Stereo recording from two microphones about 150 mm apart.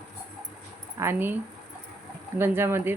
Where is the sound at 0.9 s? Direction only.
15° right (ahead or behind).